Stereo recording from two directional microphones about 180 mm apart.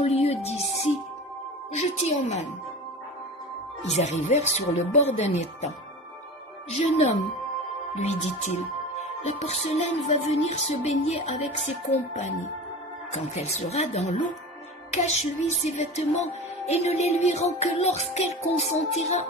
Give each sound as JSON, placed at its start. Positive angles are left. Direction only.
{"t": 0.0, "sound": "music", "side_deg": 35}
{"t": 1.7, "sound": "music", "side_deg": 35}
{"t": 3.8, "sound": "music", "side_deg": 40}
{"t": 7.9, "sound": "music", "side_deg": 40}